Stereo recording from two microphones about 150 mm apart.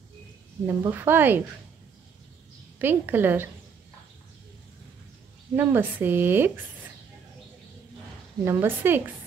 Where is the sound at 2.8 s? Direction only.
15° right (ahead or behind).